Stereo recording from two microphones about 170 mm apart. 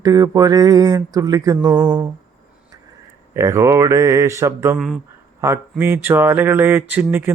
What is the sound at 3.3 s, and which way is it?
Speech, 15° right (ahead or behind).